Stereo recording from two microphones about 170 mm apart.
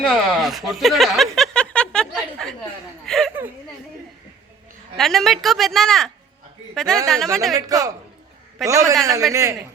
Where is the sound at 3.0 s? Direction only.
Centre (ahead or behind).